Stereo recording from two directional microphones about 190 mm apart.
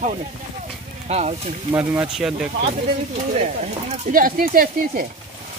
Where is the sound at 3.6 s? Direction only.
40° right (ahead or behind).